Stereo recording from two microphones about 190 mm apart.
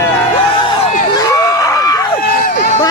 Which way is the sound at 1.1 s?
15° left (ahead or behind).